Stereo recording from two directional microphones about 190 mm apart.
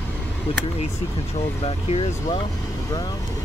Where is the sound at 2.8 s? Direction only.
20° left (ahead or behind).